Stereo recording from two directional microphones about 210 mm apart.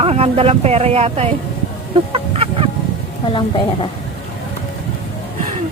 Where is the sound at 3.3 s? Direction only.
25° left (ahead or behind).